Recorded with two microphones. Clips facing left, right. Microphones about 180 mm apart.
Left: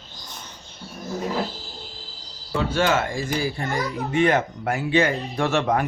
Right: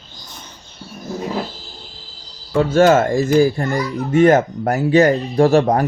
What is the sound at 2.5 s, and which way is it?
Speech, 45° right (ahead or behind).